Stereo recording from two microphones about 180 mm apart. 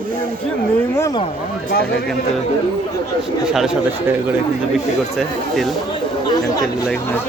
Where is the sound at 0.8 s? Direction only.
15° left (ahead or behind).